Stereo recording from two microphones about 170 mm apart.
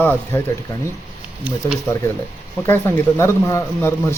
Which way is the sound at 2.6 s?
15° left (ahead or behind).